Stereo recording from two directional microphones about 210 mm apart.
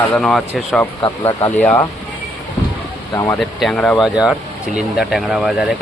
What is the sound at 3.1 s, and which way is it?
Speech, 15° left (ahead or behind).